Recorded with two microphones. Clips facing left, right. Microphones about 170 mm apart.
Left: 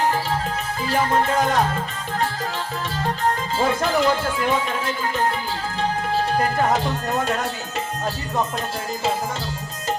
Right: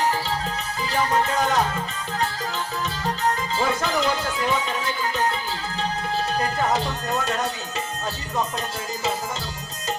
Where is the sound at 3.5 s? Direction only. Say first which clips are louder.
Left 3 dB; 55° left (ahead or behind).